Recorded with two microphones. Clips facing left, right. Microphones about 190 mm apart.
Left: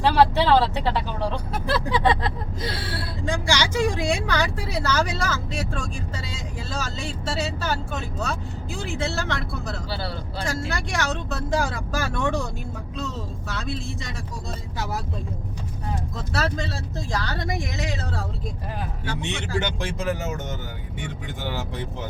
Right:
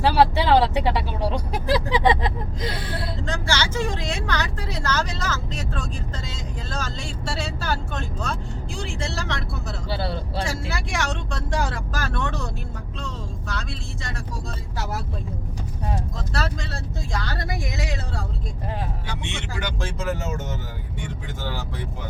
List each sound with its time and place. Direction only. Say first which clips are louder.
0.0 s speech: even; 10° right (ahead or behind)
3.2 s a woman's voice: left 3 dB; 10° left (ahead or behind)
13.5 s speech: left 4 dB; centre (ahead or behind)
16.1 s speech: left 2 dB; centre (ahead or behind)
19.5 s speech: left 4 dB; 25° left (ahead or behind)